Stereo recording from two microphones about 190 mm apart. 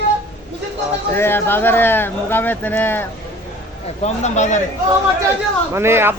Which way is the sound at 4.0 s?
35° left (ahead or behind).